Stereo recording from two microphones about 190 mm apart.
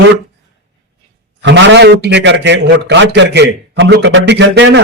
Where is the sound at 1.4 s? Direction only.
70° right (ahead or behind).